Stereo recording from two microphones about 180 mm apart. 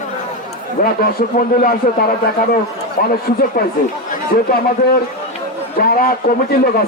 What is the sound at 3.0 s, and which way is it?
A man's voice, 55° left (ahead or behind).